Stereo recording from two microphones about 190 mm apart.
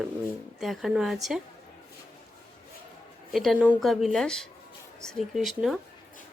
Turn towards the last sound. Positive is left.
turn(degrees=0)  # may be behind; listen again after turning